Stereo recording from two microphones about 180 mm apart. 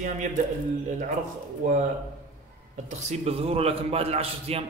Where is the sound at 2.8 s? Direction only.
35° right (ahead or behind).